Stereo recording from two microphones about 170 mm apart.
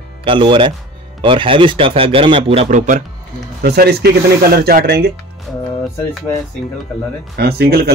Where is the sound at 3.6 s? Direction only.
70° right (ahead or behind).